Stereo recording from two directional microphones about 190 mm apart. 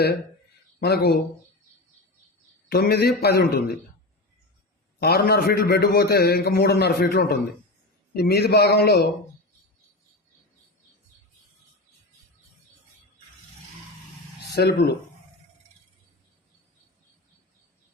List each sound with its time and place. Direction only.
0.8 s a man's voice: 55° left (ahead or behind)
2.6 s a man's voice: 55° left (ahead or behind)
4.9 s a man's voice: 50° left (ahead or behind)
14.5 s a man's voice: 60° left (ahead or behind)